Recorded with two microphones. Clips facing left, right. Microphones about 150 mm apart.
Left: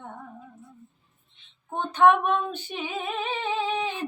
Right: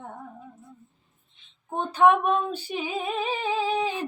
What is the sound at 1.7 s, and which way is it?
Music, 5° right (ahead or behind).